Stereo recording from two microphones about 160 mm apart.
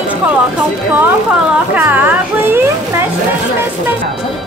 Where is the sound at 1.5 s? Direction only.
10° right (ahead or behind).